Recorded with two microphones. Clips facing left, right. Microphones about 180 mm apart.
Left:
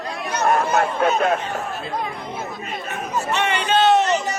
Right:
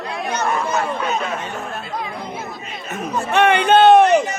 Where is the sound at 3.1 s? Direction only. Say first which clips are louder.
Right 7 dB; 55° right (ahead or behind).